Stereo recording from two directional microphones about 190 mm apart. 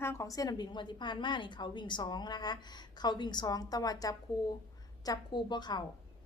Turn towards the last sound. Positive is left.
turn(degrees=25)  # may be behind; listen again after turning